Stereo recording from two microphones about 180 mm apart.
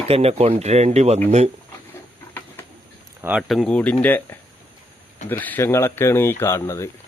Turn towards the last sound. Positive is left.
turn(degrees=15)  # may be behind; listen again after turning